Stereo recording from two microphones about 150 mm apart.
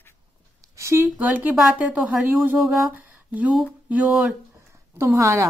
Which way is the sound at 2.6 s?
Centre (ahead or behind).